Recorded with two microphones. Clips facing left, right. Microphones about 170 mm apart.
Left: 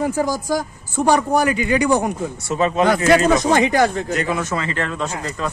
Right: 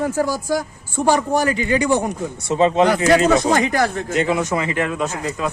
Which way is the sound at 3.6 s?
20° left (ahead or behind).